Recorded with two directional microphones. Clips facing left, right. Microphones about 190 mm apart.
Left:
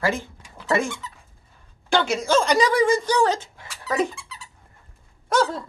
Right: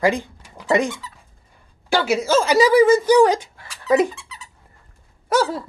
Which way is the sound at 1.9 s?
5° right (ahead or behind).